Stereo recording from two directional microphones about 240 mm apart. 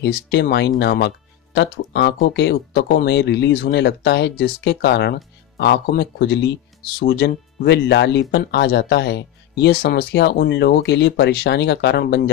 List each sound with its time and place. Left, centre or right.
0.0 s speech: left